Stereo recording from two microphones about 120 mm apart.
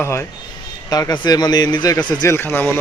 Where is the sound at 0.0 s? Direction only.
20° left (ahead or behind).